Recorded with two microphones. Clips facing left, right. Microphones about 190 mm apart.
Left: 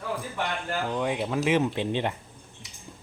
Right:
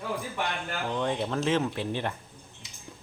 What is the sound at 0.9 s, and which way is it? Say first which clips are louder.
Speech: even; 10° left (ahead or behind).